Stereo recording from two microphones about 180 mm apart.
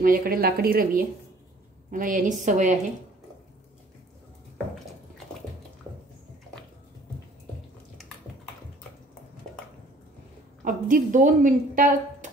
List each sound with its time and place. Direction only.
0.0 s speech: 55° right (ahead or behind)
10.6 s speech: 45° right (ahead or behind)